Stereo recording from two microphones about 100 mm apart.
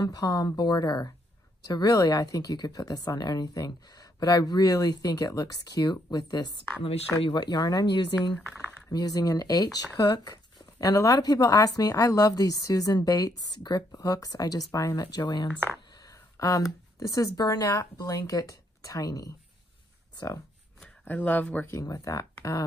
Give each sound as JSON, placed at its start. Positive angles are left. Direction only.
{"t": 0.0, "sound": "speech", "side_deg": 40}
{"t": 10.9, "sound": "speech", "side_deg": 35}
{"t": 20.8, "sound": "speech", "side_deg": 15}
{"t": 21.6, "sound": "speech", "side_deg": 35}